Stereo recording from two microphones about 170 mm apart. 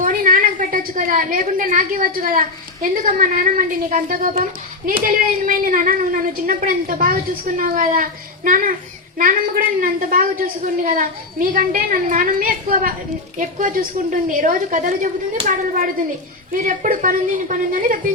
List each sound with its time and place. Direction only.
0.0 s a woman's voice: 55° right (ahead or behind)